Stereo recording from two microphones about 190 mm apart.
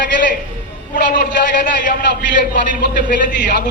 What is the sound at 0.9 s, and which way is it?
Speech, 50° left (ahead or behind).